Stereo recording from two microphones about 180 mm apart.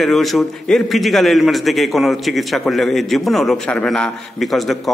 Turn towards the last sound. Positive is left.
turn(degrees=0)  # may be behind; listen again after turning